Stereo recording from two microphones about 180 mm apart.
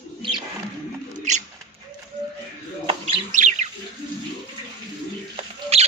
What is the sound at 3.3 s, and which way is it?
Bird, 40° right (ahead or behind).